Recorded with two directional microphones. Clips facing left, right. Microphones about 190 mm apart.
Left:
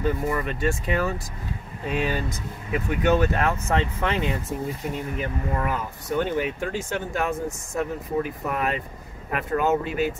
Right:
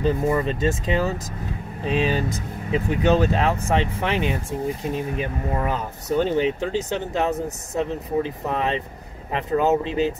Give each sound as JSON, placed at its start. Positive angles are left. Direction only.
{"t": 0.0, "sound": "speech", "side_deg": -25}